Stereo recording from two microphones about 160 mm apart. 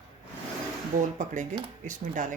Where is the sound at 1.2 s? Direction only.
50° right (ahead or behind).